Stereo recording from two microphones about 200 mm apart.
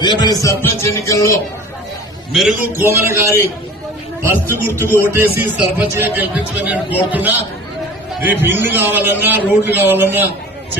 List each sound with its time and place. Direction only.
0.0 s speech: 20° left (ahead or behind)
2.3 s a man's voice: centre (ahead or behind)